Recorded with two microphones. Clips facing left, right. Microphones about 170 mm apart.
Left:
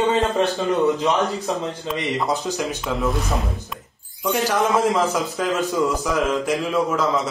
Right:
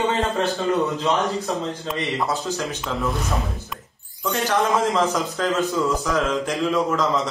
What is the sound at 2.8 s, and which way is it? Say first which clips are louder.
A man's voice: left 2 dB; centre (ahead or behind).